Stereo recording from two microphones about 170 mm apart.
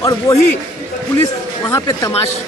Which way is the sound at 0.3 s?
20° left (ahead or behind).